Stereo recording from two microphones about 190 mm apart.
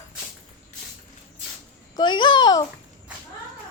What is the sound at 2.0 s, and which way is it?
Speech, 25° left (ahead or behind).